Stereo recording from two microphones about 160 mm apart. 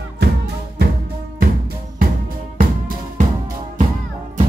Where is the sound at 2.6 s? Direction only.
60° right (ahead or behind).